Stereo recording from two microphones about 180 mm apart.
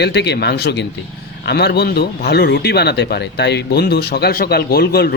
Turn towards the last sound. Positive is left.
turn(degrees=60)  # may be behind; listen again after turning